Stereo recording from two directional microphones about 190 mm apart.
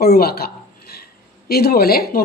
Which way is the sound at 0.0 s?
55° left (ahead or behind).